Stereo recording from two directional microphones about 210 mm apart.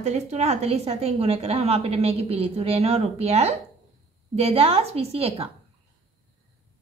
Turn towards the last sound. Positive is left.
turn(degrees=-30)  # may be behind; listen again after turning